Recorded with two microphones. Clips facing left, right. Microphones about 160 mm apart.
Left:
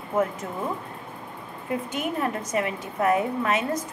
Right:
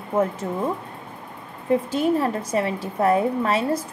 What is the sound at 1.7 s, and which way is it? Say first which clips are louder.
A woman's voice: right 8 dB; 30° right (ahead or behind).